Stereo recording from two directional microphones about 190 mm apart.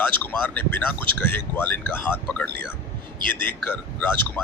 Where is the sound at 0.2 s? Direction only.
10° left (ahead or behind).